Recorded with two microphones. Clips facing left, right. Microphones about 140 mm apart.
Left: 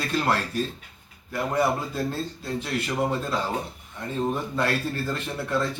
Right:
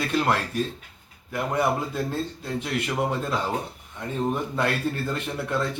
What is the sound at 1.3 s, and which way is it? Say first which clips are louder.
Speech: even; 15° right (ahead or behind).